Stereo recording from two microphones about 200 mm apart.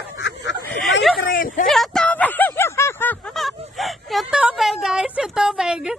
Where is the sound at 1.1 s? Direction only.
45° left (ahead or behind).